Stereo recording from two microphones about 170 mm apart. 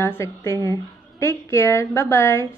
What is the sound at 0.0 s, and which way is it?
A woman's voice, 15° left (ahead or behind).